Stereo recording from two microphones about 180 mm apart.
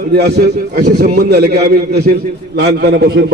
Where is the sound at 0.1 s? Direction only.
65° right (ahead or behind).